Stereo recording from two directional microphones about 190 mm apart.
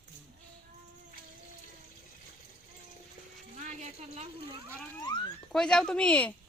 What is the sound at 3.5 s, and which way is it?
Speech, 35° right (ahead or behind).